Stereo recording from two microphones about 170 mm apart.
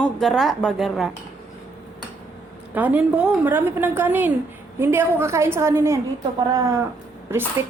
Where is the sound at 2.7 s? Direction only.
10° right (ahead or behind).